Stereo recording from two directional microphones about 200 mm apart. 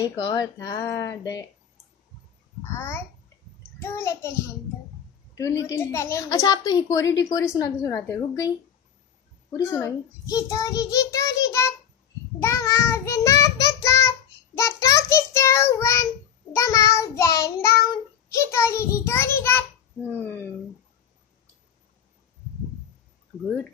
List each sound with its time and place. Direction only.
0.0 s a woman's voice: 20° left (ahead or behind)
3.8 s a woman's voice: 10° left (ahead or behind)
5.6 s a woman's voice: 15° left (ahead or behind)
9.6 s a woman's voice: 15° left (ahead or behind)
12.4 s child singing: 15° left (ahead or behind)
16.5 s a woman's voice: 15° left (ahead or behind)